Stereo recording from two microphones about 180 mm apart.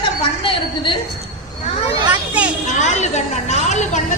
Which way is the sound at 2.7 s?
40° left (ahead or behind).